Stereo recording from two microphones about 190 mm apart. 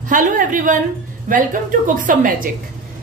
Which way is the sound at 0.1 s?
45° right (ahead or behind).